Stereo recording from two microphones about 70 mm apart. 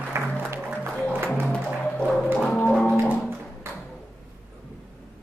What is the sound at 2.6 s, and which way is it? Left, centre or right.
Music, centre.